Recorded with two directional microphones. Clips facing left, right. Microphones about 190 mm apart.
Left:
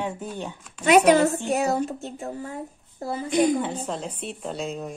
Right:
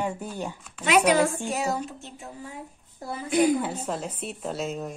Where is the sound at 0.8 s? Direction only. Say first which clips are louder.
Left 4 dB; 50° left (ahead or behind).